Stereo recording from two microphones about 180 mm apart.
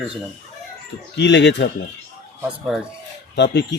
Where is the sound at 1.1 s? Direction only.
75° left (ahead or behind).